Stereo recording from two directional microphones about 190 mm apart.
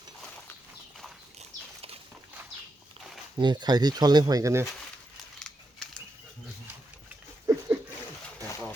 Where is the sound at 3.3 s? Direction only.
25° right (ahead or behind).